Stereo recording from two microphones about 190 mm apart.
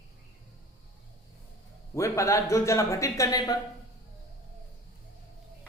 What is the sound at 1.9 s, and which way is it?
A man's voice, 15° left (ahead or behind).